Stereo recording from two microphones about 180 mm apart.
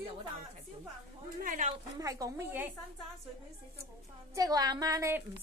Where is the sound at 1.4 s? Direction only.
45° right (ahead or behind).